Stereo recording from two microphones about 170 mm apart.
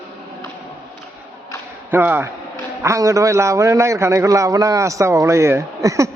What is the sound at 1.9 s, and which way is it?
A man's voice, 10° right (ahead or behind).